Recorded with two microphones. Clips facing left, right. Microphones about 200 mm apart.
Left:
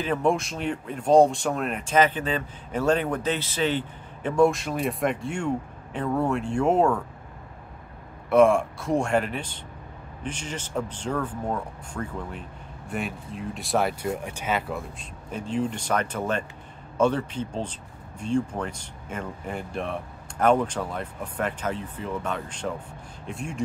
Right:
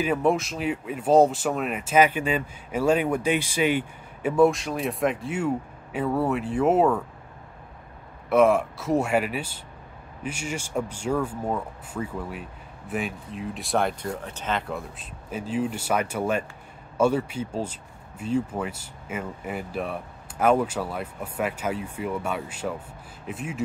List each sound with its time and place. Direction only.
0.0 s speech: 5° right (ahead or behind)
8.3 s speech: centre (ahead or behind)
14.0 s speech: 10° left (ahead or behind)